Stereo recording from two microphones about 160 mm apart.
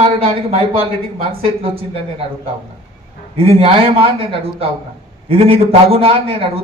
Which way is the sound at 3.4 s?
35° right (ahead or behind).